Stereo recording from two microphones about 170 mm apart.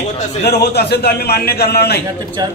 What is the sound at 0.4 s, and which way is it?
A man's voice, 70° left (ahead or behind).